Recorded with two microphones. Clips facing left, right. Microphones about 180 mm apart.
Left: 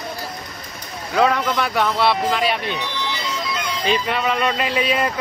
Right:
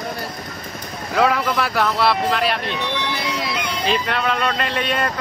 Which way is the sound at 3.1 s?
65° right (ahead or behind).